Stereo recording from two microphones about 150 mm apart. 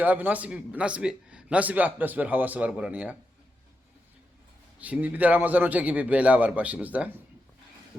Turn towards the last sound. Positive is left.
turn(degrees=-10)  # may be behind; listen again after turning